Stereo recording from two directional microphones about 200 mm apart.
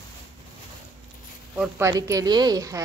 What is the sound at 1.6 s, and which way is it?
Speech, 15° right (ahead or behind).